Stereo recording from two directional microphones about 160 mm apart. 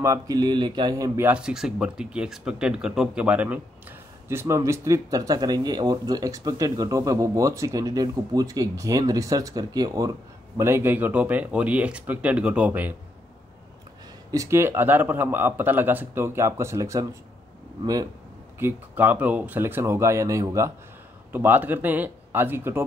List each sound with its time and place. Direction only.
0.0 s speech: 20° right (ahead or behind)
14.3 s speech: 20° right (ahead or behind)
18.6 s speech: 10° right (ahead or behind)